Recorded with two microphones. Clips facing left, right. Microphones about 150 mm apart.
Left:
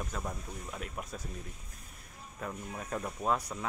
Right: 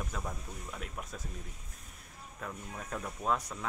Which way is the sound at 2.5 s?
5° left (ahead or behind).